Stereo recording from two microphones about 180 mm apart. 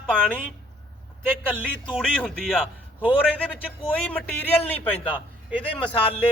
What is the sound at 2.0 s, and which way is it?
Speech, 5° left (ahead or behind).